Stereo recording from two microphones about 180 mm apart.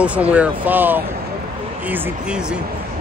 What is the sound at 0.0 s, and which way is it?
Speech, 5° right (ahead or behind).